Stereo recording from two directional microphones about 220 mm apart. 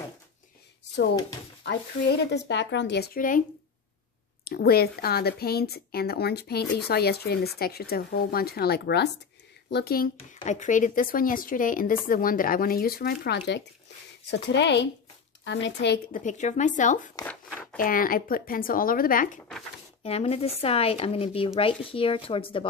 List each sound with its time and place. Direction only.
1.6 s speech: 50° left (ahead or behind)
4.5 s speech: 45° left (ahead or behind)
10.1 s speech: 35° left (ahead or behind)
17.1 s speech: 15° left (ahead or behind)
17.7 s speech: 40° left (ahead or behind); by 22.7 s 25° left (ahead or behind)